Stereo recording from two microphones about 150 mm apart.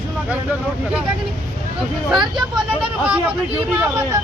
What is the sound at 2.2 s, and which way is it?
Speech, 30° right (ahead or behind).